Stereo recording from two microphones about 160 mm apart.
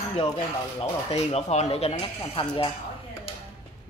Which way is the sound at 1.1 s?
40° left (ahead or behind).